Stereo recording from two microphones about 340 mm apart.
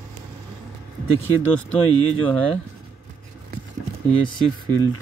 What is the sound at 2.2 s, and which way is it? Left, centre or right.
Speech, centre.